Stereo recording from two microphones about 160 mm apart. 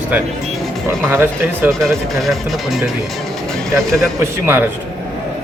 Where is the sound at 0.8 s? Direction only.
15° right (ahead or behind).